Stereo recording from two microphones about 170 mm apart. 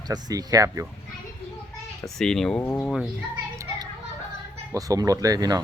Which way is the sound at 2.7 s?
15° left (ahead or behind).